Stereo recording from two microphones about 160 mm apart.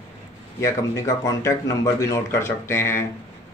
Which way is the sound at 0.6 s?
20° left (ahead or behind).